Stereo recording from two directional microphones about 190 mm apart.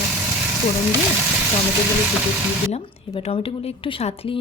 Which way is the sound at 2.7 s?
35° left (ahead or behind).